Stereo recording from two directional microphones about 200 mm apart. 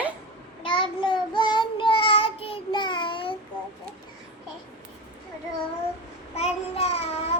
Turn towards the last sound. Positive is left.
turn(degrees=30)  # may be behind; listen again after turning